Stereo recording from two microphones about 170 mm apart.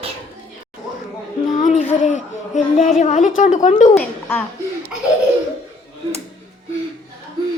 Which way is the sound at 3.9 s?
10° left (ahead or behind).